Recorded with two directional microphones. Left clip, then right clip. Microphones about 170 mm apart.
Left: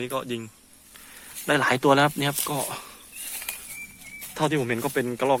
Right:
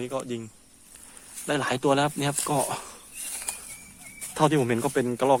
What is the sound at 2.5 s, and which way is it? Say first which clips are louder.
Speech: right 3 dB; 20° right (ahead or behind).